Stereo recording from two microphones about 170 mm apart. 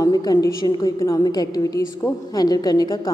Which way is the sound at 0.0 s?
20° left (ahead or behind).